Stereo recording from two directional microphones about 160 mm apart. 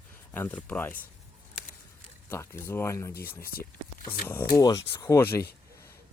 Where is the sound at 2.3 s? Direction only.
15° left (ahead or behind).